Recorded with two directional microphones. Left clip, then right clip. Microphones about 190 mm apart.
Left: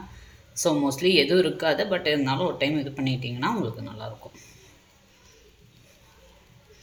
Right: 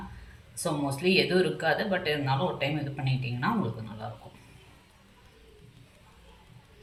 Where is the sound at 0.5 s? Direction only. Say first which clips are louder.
Left 7 dB; 55° left (ahead or behind).